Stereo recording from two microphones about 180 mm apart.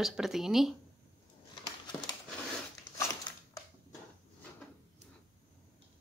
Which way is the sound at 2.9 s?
20° left (ahead or behind).